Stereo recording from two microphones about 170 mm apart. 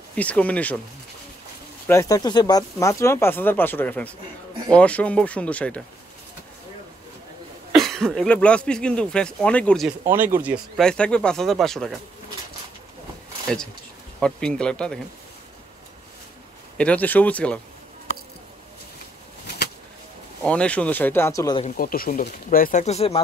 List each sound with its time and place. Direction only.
0.1 s speech: 10° left (ahead or behind)
1.9 s speech: 20° left (ahead or behind)
7.7 s speech: centre (ahead or behind)
9.8 s speech: 10° right (ahead or behind)
10.8 s speech: 5° left (ahead or behind)
13.5 s speech: 5° left (ahead or behind)
16.7 s speech: 5° left (ahead or behind)
20.4 s speech: 5° left (ahead or behind)
21.7 s speech: 60° left (ahead or behind); by 23.2 s 35° left (ahead or behind)